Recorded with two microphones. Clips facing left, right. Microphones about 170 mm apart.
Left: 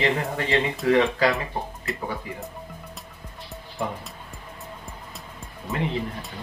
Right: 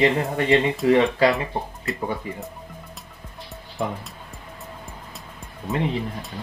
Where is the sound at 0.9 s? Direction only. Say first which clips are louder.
Right 2 dB; 25° right (ahead or behind).